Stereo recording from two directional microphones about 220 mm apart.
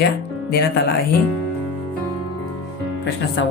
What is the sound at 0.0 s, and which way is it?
Speech, 50° left (ahead or behind).